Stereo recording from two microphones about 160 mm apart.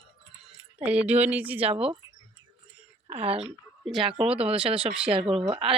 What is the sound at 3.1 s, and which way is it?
Speech, 40° right (ahead or behind).